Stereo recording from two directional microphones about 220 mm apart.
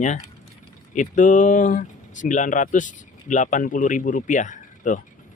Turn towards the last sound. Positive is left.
turn(degrees=35)  # may be behind; listen again after turning